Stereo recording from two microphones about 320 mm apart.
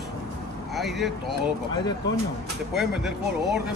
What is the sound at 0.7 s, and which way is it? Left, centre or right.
Speech, centre.